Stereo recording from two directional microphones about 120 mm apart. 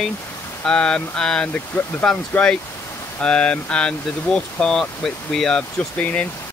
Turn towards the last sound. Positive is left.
turn(degrees=10)  # may be behind; listen again after turning